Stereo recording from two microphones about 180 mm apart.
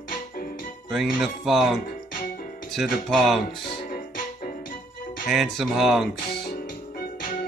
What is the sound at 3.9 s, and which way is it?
Music, 50° left (ahead or behind).